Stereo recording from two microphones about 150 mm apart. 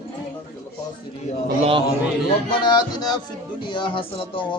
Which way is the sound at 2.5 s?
30° left (ahead or behind).